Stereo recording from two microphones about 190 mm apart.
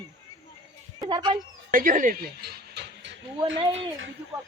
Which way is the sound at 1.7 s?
45° right (ahead or behind).